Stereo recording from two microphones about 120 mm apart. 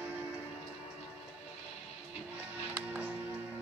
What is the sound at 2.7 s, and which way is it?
Music, 15° right (ahead or behind).